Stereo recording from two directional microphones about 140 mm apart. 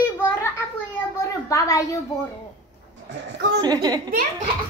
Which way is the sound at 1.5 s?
20° left (ahead or behind).